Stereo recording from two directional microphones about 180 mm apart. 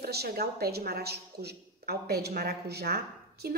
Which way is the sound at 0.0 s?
60° right (ahead or behind).